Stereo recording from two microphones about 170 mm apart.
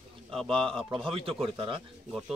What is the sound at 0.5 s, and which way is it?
Speech, 30° right (ahead or behind).